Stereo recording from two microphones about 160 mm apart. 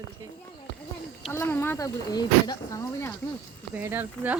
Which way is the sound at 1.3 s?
15° left (ahead or behind).